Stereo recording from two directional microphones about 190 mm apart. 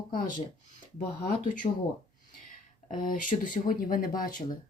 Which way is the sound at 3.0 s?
45° left (ahead or behind).